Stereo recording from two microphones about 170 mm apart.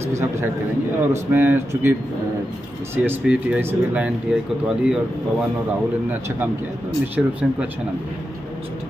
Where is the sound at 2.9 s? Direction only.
10° right (ahead or behind).